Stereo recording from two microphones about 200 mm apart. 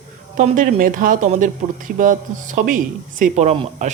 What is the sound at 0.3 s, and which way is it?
Speech, 40° right (ahead or behind).